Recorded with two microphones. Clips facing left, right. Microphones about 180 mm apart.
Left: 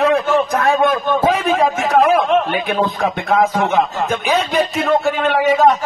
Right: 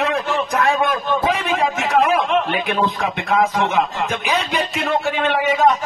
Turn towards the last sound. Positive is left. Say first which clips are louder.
# left 4 dB
turn(degrees=40)  # may be behind; listen again after turning